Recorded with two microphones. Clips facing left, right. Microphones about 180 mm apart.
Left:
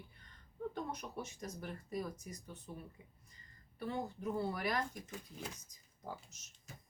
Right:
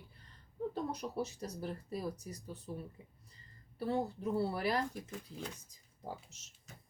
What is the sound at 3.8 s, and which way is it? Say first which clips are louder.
Speech: right 5 dB; 35° right (ahead or behind).